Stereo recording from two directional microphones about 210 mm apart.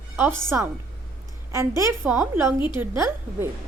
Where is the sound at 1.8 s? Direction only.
10° right (ahead or behind).